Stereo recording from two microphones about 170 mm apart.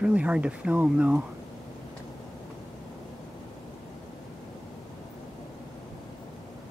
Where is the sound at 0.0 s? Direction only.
5° right (ahead or behind).